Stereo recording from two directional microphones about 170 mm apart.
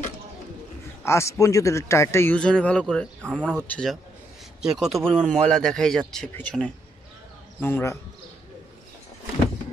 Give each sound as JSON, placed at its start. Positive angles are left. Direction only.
{"t": 1.0, "sound": "a man's voice", "side_deg": 15}